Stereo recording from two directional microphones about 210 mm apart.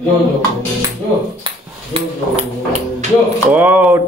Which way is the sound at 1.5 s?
30° right (ahead or behind).